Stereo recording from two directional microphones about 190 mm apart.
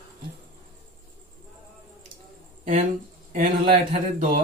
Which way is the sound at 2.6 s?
40° right (ahead or behind).